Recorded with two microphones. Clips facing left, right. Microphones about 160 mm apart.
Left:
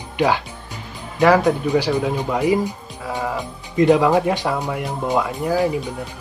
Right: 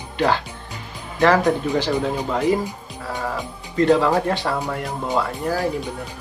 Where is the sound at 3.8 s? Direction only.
15° left (ahead or behind).